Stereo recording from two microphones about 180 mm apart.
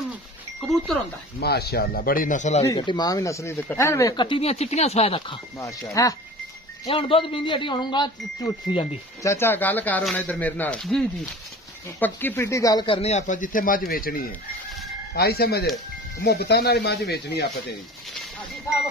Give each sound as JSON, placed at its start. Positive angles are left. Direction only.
{"t": 1.4, "sound": "speech", "side_deg": 60}
{"t": 2.6, "sound": "speech", "side_deg": 20}
{"t": 6.0, "sound": "speech", "side_deg": 20}
{"t": 6.9, "sound": "speech", "side_deg": 30}